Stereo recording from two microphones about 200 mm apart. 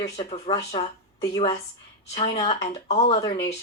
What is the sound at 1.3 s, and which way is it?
Speech, 30° left (ahead or behind).